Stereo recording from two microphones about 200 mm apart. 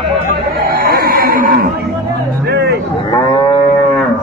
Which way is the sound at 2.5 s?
55° right (ahead or behind).